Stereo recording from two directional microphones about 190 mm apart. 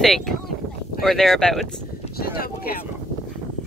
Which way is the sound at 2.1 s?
55° left (ahead or behind).